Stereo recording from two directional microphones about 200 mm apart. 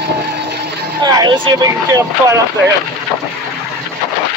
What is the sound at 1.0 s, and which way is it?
Speech, 20° right (ahead or behind).